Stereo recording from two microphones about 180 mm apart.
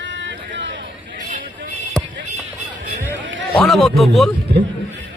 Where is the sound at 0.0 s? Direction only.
85° right.